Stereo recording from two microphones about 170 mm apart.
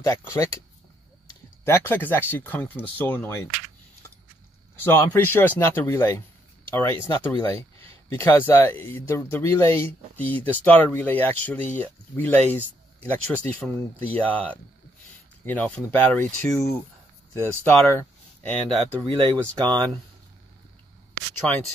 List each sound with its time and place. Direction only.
0.0 s speech: 20° left (ahead or behind)
4.8 s speech: 15° left (ahead or behind)
17.3 s speech: 15° left (ahead or behind)
19.0 s speech: 30° right (ahead or behind)
21.4 s speech: 10° left (ahead or behind)